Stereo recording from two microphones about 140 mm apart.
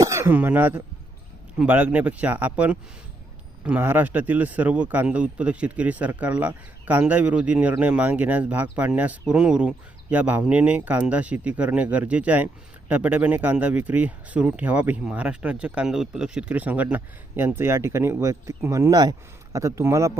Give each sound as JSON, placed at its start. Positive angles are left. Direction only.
{"t": 0.0, "sound": "speech", "side_deg": -20}